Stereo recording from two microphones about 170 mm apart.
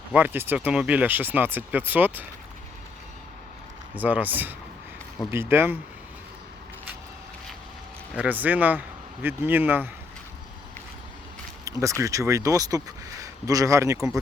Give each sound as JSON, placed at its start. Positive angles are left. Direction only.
{"t": 0.1, "sound": "speech", "side_deg": -10}
{"t": 3.9, "sound": "speech", "side_deg": -10}
{"t": 8.1, "sound": "speech", "side_deg": -10}
{"t": 11.6, "sound": "speech", "side_deg": -20}